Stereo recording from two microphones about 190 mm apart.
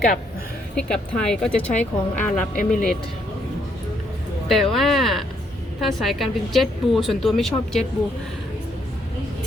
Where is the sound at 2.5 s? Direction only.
45° left (ahead or behind).